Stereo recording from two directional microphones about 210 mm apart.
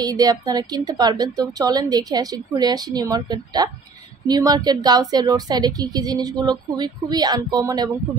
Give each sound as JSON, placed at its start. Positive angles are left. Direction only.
{"t": 0.0, "sound": "a woman's voice", "side_deg": -20}